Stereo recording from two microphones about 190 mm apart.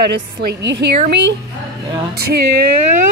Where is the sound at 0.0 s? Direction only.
60° right (ahead or behind).